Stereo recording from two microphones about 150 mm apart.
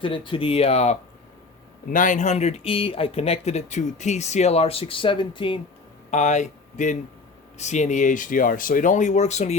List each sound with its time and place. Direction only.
0.0 s speech: 35° left (ahead or behind)
1.9 s speech: 60° left (ahead or behind); by 5.5 s 35° left (ahead or behind)
6.1 s speech: 50° left (ahead or behind)